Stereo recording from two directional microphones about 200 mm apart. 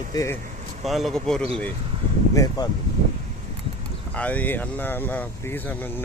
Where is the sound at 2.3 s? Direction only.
15° left (ahead or behind).